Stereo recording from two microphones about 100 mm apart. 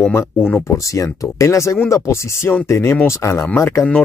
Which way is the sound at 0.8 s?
35° left (ahead or behind).